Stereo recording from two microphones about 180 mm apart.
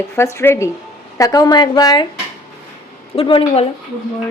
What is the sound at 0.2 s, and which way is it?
A woman's voice, 15° left (ahead or behind).